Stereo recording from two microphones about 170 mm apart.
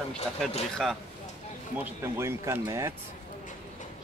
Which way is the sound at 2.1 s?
15° right (ahead or behind).